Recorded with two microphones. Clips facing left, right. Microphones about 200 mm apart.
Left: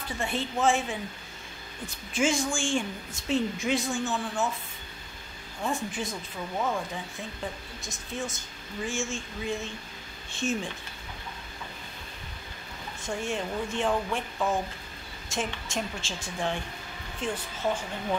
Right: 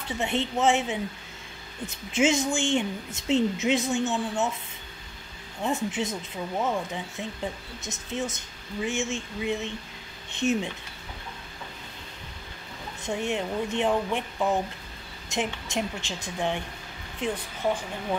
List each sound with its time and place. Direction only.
0.2 s a woman's voice: 20° right (ahead or behind)
2.1 s a woman's voice: 20° right (ahead or behind)
5.6 s a woman's voice: 20° right (ahead or behind)
13.0 s a woman's voice: 20° right (ahead or behind)